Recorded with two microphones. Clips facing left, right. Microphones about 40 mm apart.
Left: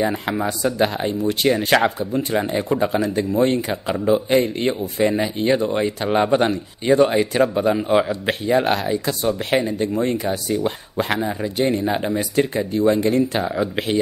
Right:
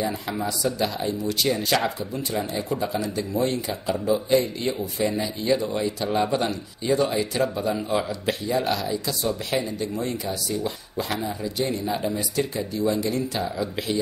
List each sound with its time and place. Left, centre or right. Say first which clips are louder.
0.0 s speech: left 6 dB; left